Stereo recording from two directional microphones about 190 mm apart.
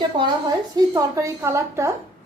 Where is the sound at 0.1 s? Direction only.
25° right (ahead or behind).